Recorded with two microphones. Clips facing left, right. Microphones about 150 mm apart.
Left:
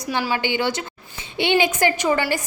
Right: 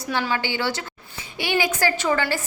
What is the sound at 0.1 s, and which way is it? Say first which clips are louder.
A woman's voice: left 2 dB; 15° left (ahead or behind).